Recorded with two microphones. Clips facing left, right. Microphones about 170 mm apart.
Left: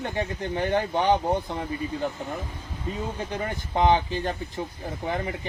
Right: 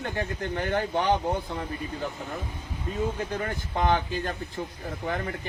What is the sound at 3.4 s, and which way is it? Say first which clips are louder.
Speech: left 5 dB; 20° left (ahead or behind).